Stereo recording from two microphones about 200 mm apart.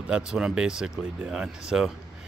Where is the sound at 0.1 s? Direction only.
5° right (ahead or behind).